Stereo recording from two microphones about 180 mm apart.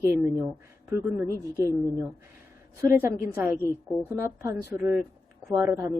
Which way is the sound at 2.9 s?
15° right (ahead or behind).